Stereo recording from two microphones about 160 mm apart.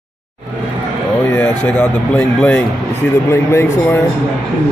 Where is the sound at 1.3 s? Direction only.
10° left (ahead or behind).